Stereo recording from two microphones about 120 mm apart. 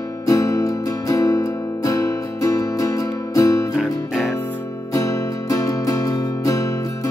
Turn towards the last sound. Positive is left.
turn(degrees=25)  # may be behind; listen again after turning